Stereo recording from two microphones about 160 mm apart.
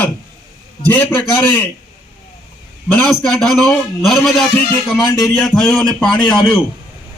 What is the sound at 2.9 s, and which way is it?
A man's voice, 10° left (ahead or behind).